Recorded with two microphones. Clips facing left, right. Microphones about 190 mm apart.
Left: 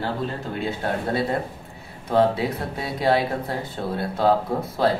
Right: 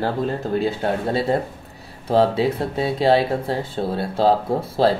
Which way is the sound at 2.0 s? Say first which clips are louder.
Right 3 dB; 30° right (ahead or behind).